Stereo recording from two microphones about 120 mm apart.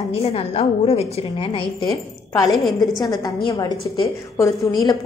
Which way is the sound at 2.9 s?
30° left (ahead or behind).